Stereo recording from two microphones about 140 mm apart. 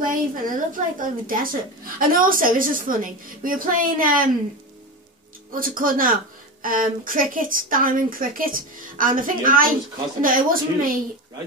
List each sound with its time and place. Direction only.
0.0 s a woman's voice: 80° right
5.5 s a woman's voice: 85° right